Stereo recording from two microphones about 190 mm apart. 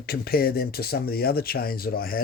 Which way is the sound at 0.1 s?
55° left (ahead or behind).